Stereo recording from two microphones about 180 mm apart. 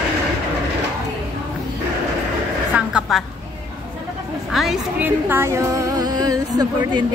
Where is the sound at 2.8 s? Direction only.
5° right (ahead or behind).